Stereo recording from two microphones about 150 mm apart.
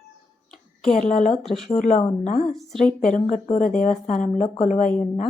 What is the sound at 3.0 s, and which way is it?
Speech, 55° left (ahead or behind).